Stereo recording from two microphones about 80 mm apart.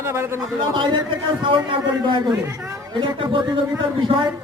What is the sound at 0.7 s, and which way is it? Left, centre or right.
A man's voice, right.